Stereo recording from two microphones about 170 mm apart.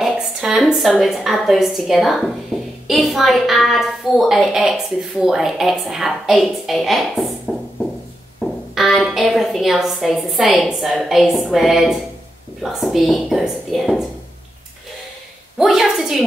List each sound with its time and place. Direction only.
0.0 s a woman's voice: centre (ahead or behind)
8.4 s a woman's voice: centre (ahead or behind)
15.5 s a woman's voice: centre (ahead or behind)